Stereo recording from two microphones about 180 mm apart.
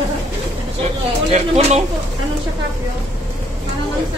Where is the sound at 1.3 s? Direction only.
35° right (ahead or behind).